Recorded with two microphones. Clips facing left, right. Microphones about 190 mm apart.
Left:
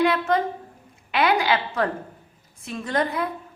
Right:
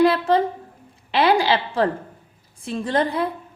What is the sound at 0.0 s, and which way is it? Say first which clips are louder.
A woman's voice: right 4 dB; 30° right (ahead or behind).